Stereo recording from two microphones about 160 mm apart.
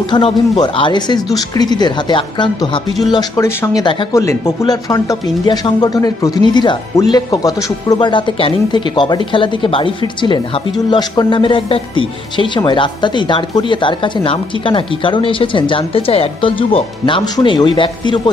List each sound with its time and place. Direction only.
0.1 s speech: 30° left (ahead or behind)